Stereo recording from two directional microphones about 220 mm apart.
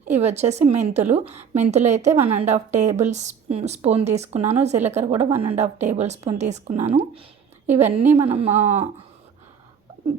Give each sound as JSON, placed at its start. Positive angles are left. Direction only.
{"t": 0.0, "sound": "a woman's voice", "side_deg": -30}